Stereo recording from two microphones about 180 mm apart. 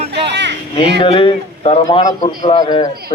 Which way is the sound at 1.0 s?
30° left (ahead or behind).